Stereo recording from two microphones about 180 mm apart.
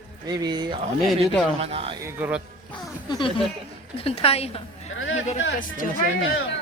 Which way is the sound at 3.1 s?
25° left (ahead or behind).